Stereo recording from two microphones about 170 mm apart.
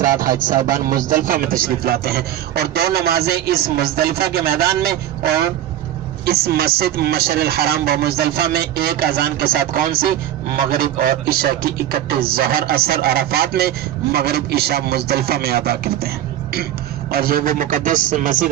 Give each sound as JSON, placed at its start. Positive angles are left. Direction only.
{"t": 0.2, "sound": "a man's voice", "side_deg": -55}